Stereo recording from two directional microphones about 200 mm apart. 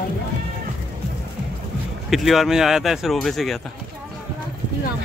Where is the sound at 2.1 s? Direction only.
Centre (ahead or behind).